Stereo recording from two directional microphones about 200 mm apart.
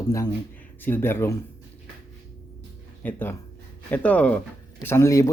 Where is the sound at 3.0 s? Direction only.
10° left (ahead or behind).